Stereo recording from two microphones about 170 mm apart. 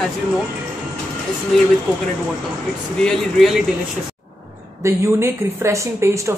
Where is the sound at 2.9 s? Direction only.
5° left (ahead or behind).